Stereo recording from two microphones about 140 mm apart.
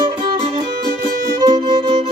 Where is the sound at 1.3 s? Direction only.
30° right (ahead or behind).